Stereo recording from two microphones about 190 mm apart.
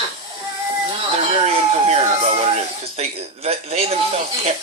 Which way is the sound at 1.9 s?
35° right (ahead or behind).